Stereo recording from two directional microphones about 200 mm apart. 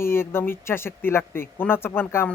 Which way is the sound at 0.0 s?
10° left (ahead or behind).